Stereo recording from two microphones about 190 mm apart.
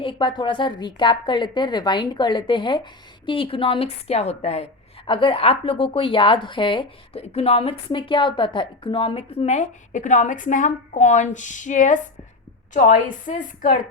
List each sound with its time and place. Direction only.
0.0 s a woman's voice: 25° left (ahead or behind); by 13.7 s 45° left (ahead or behind)